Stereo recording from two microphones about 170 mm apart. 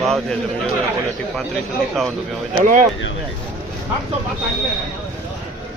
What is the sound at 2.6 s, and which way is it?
Speech, 50° right (ahead or behind).